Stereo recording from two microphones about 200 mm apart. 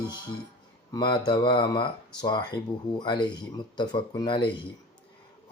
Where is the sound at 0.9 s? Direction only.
20° left (ahead or behind).